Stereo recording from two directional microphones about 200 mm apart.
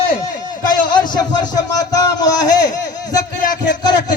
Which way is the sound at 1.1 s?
20° left (ahead or behind).